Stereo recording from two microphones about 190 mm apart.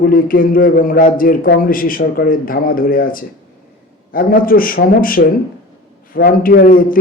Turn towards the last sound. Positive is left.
turn(degrees=50)  # may be behind; listen again after turning